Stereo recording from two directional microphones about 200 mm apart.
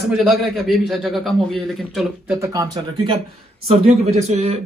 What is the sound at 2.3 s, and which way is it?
Speech, 15° right (ahead or behind).